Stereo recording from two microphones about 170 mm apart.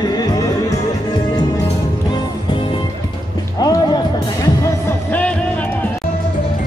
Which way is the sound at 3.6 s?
20° left (ahead or behind).